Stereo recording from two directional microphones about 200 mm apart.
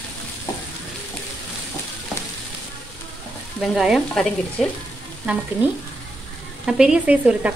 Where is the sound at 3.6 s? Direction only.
Centre (ahead or behind).